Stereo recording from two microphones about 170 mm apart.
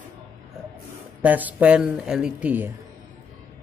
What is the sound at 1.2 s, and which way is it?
Speech, 10° right (ahead or behind).